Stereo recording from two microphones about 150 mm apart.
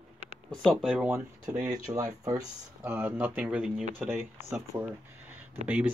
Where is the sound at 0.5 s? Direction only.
Centre (ahead or behind).